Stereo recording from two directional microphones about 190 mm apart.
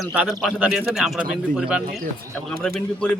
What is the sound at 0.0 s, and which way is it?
A man's voice, 5° right (ahead or behind).